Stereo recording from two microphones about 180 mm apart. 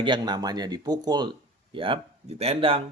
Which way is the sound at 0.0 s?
25° right (ahead or behind).